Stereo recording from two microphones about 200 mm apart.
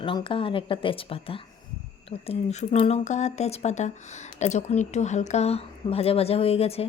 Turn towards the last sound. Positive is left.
turn(degrees=30)  # may be behind; listen again after turning